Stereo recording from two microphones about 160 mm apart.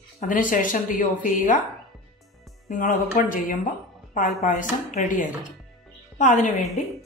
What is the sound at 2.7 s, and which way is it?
A woman's voice, 55° left (ahead or behind).